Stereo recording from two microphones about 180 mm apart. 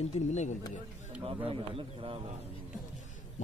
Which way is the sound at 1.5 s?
30° right (ahead or behind).